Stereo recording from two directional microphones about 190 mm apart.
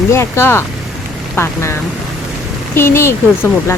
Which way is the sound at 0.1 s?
15° left (ahead or behind).